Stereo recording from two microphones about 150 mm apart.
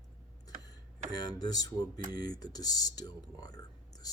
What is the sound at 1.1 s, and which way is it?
Speech, 25° left (ahead or behind).